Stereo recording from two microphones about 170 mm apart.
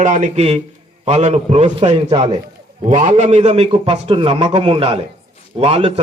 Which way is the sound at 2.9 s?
50° right (ahead or behind).